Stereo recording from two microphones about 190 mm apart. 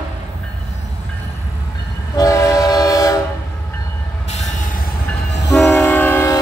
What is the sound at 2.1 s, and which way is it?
Train, 15° left (ahead or behind).